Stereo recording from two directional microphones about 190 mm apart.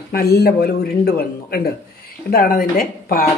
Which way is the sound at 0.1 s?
55° left (ahead or behind).